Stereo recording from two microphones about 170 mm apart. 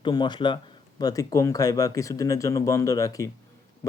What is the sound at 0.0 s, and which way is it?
A man's voice, 30° left (ahead or behind).